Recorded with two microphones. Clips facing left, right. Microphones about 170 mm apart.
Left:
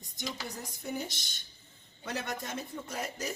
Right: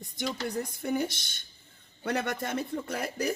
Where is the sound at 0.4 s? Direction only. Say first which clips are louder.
Right 8 dB; 60° right (ahead or behind).